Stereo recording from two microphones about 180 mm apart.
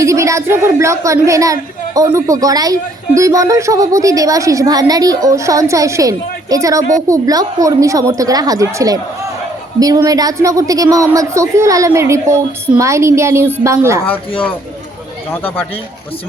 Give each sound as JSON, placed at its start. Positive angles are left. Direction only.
{"t": 0.0, "sound": "a woman's voice", "side_deg": -15}
{"t": 15.3, "sound": "speech", "side_deg": 10}